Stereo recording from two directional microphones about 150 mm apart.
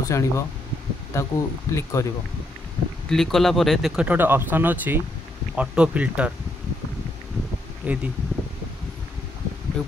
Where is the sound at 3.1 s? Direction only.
Centre (ahead or behind).